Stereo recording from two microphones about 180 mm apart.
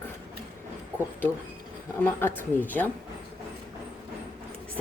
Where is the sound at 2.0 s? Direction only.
10° left (ahead or behind).